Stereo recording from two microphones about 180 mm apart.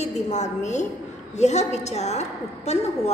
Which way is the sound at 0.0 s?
40° left (ahead or behind).